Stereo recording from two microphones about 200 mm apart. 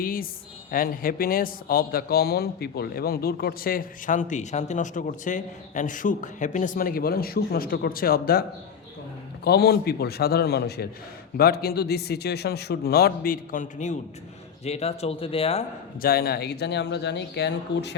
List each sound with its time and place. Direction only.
0.0 s a man's voice: 45° left (ahead or behind); by 15.6 s 30° left (ahead or behind)
16.0 s speech: 50° left (ahead or behind)